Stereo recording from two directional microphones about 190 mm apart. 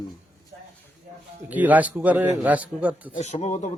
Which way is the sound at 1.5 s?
10° right (ahead or behind).